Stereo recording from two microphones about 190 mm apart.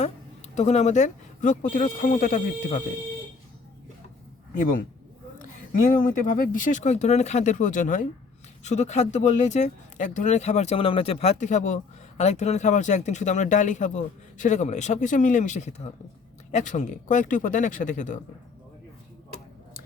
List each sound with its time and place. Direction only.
0.5 s speech: 35° left (ahead or behind)
5.9 s speech: 45° left (ahead or behind)